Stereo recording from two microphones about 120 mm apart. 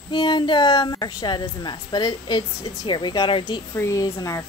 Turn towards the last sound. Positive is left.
turn(degrees=30)  # may be behind; listen again after turning